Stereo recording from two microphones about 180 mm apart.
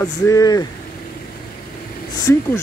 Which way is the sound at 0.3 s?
20° left (ahead or behind).